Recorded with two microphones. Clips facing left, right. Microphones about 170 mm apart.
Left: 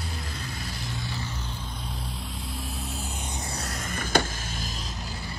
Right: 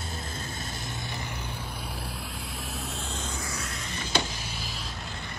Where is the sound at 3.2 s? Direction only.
15° left (ahead or behind).